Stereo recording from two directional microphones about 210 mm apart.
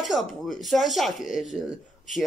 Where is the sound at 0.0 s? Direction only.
Centre (ahead or behind).